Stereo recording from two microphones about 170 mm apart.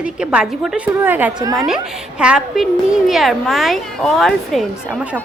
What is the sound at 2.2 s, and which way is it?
A woman's voice, 5° right (ahead or behind).